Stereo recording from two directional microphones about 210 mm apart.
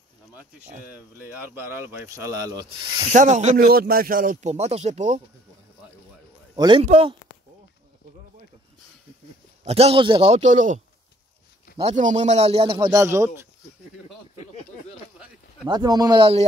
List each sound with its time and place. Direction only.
0.9 s speech: 10° right (ahead or behind)
3.1 s speech: 35° right (ahead or behind)
6.5 s speech: 20° right (ahead or behind)
9.7 s speech: 30° right (ahead or behind)
11.8 s speech: 35° right (ahead or behind); by 13.5 s 15° right (ahead or behind)
14.3 s a sound: 35° left (ahead or behind)
15.7 s speech: 20° right (ahead or behind)